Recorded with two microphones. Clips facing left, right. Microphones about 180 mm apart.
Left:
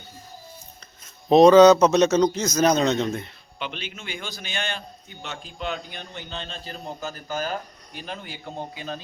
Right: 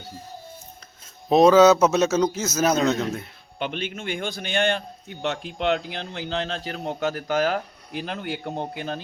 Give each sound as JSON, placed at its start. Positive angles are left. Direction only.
{"t": 1.3, "sound": "a man's voice", "side_deg": -5}
{"t": 3.6, "sound": "a man's voice", "side_deg": -50}